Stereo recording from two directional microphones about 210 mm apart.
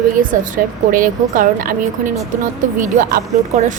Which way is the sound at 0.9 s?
40° right (ahead or behind).